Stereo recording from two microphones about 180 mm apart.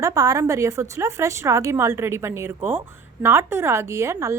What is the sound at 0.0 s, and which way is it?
A woman's voice, 20° right (ahead or behind).